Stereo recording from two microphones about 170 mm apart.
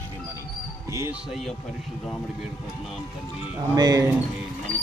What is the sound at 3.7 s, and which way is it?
Speech, 20° right (ahead or behind).